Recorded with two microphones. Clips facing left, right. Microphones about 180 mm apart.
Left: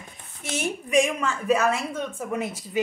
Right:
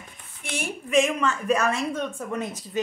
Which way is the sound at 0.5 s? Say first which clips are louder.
Even; 15° left (ahead or behind).